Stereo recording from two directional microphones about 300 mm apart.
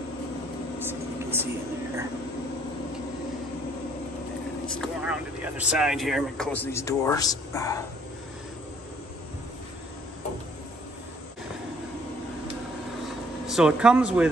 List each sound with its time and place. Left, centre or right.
0.7 s vehicle: centre
4.6 s speech: centre
13.5 s speech: centre